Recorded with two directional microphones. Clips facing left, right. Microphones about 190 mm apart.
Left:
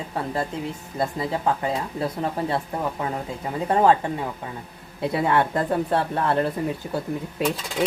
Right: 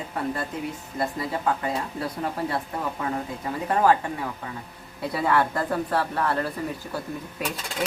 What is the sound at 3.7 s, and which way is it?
Speech, 25° left (ahead or behind).